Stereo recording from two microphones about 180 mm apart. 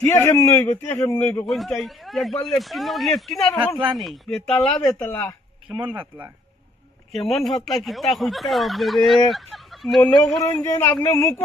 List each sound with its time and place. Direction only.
0.0 s speech: 15° left (ahead or behind)
1.5 s a man's voice: centre (ahead or behind)
5.6 s speech: 25° right (ahead or behind)
7.3 s a man's voice: centre (ahead or behind)
10.4 s speech: 15° left (ahead or behind)